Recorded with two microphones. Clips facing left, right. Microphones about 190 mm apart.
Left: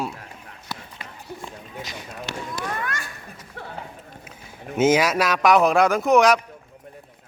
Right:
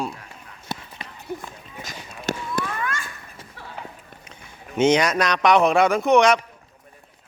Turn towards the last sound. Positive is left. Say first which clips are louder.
# even
turn(degrees=0)  # may be behind; listen again after turning